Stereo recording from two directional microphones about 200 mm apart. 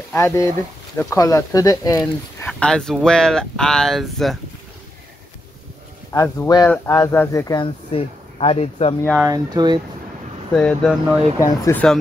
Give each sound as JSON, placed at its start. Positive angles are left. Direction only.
{"t": 0.1, "sound": "speech", "side_deg": 15}
{"t": 2.4, "sound": "speech", "side_deg": 5}
{"t": 6.1, "sound": "speech", "side_deg": 15}
{"t": 9.1, "sound": "speech", "side_deg": -15}
{"t": 10.5, "sound": "speech", "side_deg": 5}
{"t": 11.3, "sound": "speech", "side_deg": 15}